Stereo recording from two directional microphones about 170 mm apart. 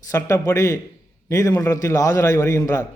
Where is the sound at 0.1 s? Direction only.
20° left (ahead or behind).